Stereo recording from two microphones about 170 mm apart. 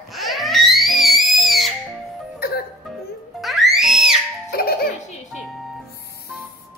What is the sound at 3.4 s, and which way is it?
Music, centre (ahead or behind).